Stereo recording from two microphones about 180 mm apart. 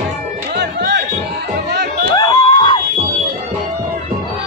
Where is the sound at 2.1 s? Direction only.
20° left (ahead or behind).